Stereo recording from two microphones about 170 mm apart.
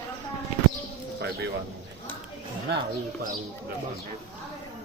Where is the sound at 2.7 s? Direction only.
75° right (ahead or behind).